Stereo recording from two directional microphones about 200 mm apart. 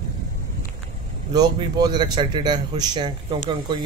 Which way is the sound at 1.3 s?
20° right (ahead or behind).